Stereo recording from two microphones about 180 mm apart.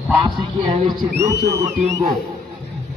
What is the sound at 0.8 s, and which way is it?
Speech, 20° right (ahead or behind).